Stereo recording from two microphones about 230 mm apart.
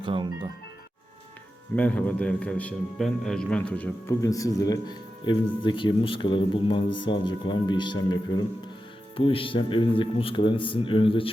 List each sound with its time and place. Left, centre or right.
0.0 s speech: right
1.7 s a man's voice: centre
9.1 s speech: left